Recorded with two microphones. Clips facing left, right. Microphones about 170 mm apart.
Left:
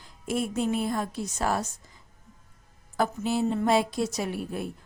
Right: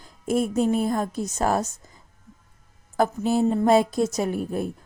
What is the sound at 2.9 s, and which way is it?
A woman's voice, 45° right (ahead or behind).